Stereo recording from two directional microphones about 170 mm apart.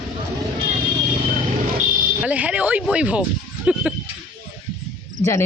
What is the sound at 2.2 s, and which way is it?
Speech, 10° right (ahead or behind).